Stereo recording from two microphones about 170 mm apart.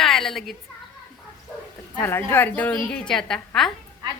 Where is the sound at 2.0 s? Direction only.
15° left (ahead or behind).